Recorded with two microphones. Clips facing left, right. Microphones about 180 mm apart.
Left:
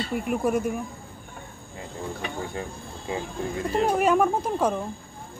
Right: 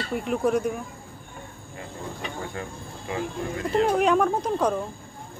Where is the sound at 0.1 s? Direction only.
10° left (ahead or behind).